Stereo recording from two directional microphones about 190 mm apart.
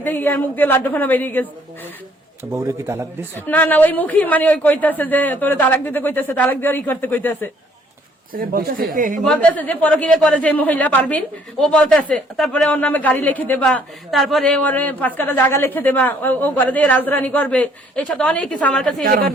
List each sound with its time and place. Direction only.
0.0 s speech: 10° left (ahead or behind)
2.4 s a man's voice: 10° right (ahead or behind)
3.4 s speech: 10° left (ahead or behind)
8.3 s speech: 50° right (ahead or behind)
9.2 s speech: 5° left (ahead or behind)
19.0 s speech: 50° right (ahead or behind)